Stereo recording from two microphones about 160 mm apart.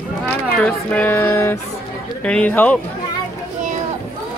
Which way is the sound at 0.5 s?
10° left (ahead or behind).